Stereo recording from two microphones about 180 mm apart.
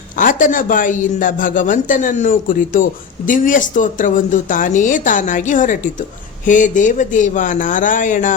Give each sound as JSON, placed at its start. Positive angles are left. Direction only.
{"t": 0.2, "sound": "a woman's voice", "side_deg": 45}